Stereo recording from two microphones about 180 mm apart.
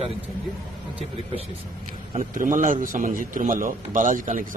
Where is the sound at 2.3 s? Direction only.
50° right (ahead or behind).